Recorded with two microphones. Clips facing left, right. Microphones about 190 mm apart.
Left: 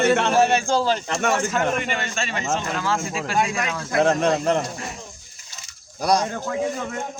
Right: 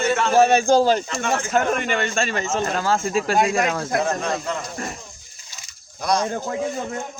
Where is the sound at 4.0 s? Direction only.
70° left (ahead or behind).